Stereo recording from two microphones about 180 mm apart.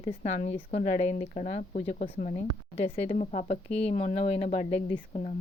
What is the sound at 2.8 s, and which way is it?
Speech, 35° left (ahead or behind).